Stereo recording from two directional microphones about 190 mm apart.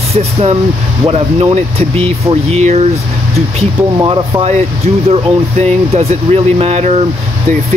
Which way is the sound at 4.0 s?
25° right (ahead or behind).